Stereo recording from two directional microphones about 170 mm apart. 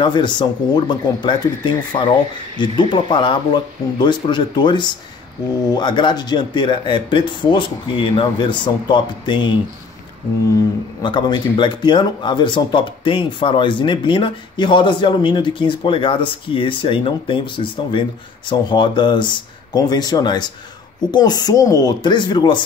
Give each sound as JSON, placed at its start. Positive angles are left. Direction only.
{"t": 0.0, "sound": "speech", "side_deg": 25}
{"t": 11.0, "sound": "speech", "side_deg": 25}